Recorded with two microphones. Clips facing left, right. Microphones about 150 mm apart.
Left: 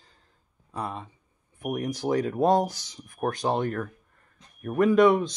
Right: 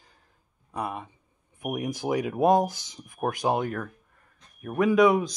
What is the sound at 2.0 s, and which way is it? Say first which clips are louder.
Speech: left 1 dB; 15° right (ahead or behind).